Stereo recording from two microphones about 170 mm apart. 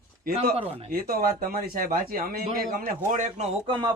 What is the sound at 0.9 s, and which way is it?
A man's voice, 60° right (ahead or behind).